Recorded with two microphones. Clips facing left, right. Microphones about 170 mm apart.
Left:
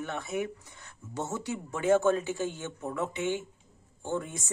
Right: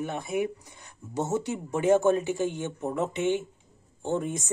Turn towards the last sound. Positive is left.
turn(degrees=-20)  # may be behind; listen again after turning